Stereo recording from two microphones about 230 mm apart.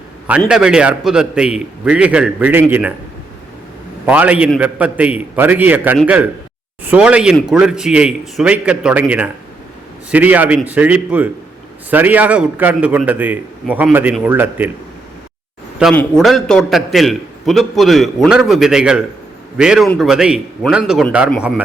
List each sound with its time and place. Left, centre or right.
0.3 s a man's voice: centre
4.0 s a man's voice: centre
15.8 s a man's voice: centre